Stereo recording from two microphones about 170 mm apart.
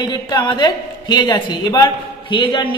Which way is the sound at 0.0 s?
25° left (ahead or behind).